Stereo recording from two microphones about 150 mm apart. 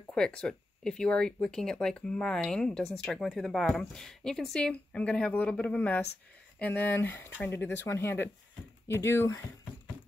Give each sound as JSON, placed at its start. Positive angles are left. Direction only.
{"t": 0.1, "sound": "speech", "side_deg": 5}